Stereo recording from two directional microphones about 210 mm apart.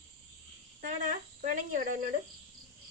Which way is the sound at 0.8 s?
40° right (ahead or behind).